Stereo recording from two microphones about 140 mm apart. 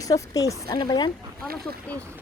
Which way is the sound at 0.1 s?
25° left (ahead or behind).